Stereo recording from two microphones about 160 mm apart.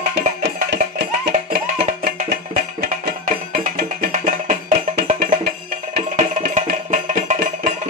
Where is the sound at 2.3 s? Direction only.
90° right.